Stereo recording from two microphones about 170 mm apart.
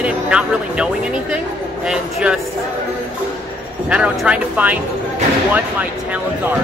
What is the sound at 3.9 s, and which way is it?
Speech, 5° right (ahead or behind).